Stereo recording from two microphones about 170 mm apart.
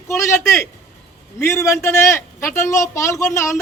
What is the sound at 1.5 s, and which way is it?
A man's voice, 20° left (ahead or behind).